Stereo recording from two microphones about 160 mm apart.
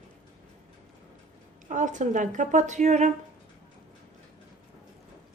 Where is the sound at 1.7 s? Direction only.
50° right (ahead or behind).